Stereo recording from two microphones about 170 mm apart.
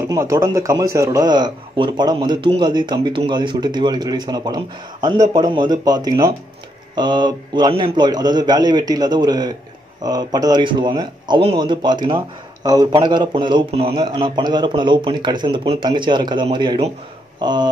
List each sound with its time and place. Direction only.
0.0 s a man's voice: 20° right (ahead or behind)